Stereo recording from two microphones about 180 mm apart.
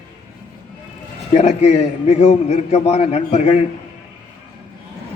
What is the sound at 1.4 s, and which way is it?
A man's voice, 35° left (ahead or behind).